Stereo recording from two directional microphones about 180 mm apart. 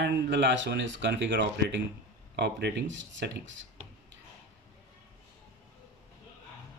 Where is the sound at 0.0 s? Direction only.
75° right (ahead or behind).